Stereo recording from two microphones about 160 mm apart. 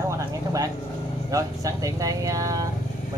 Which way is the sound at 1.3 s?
20° right (ahead or behind).